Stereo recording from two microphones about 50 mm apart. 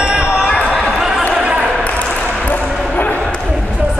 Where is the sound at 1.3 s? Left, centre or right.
Right.